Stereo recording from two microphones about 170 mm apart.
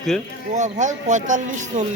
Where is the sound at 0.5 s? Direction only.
45° right (ahead or behind).